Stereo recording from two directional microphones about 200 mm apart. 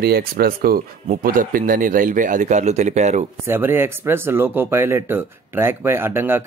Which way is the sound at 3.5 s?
10° right (ahead or behind).